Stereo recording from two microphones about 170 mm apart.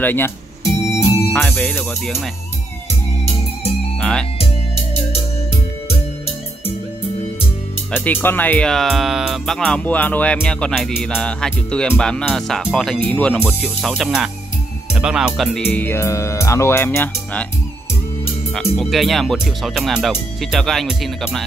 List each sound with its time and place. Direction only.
0.0 s music: 10° left (ahead or behind)
1.5 s speech: 5° left (ahead or behind)
4.0 s speech: 5° left (ahead or behind)
5.9 s music: 35° left (ahead or behind)
7.9 s speech: 10° left (ahead or behind)
15.6 s speech: 10° left (ahead or behind)
18.5 s speech: centre (ahead or behind)